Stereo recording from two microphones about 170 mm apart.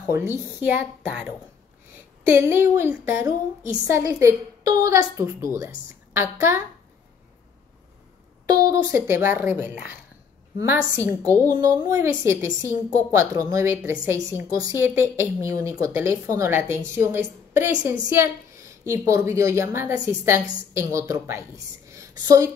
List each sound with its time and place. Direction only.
0.1 s a woman's voice: 15° right (ahead or behind)
8.5 s a woman's voice: 20° right (ahead or behind)
11.0 s a woman's voice: 20° right (ahead or behind)